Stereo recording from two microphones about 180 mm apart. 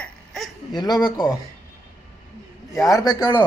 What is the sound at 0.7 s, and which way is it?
Speech, 25° left (ahead or behind).